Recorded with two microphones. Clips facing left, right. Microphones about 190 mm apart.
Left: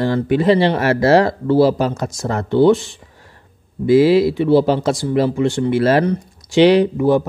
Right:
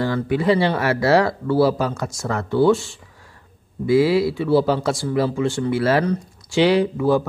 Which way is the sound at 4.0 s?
20° left (ahead or behind).